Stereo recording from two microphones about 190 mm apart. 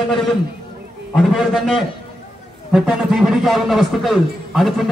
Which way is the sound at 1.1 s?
Centre (ahead or behind).